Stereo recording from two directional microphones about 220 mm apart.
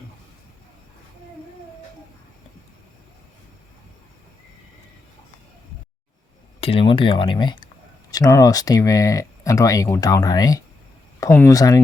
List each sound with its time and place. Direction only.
6.6 s speech: 25° left (ahead or behind)